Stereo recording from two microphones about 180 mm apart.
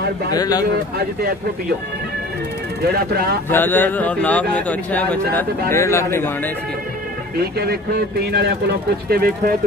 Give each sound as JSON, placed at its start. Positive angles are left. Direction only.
{"t": 0.3, "sound": "speech", "side_deg": 20}
{"t": 0.9, "sound": "speech", "side_deg": -60}
{"t": 2.8, "sound": "speech", "side_deg": -60}
{"t": 3.4, "sound": "a man's voice", "side_deg": 10}
{"t": 7.5, "sound": "speech", "side_deg": -60}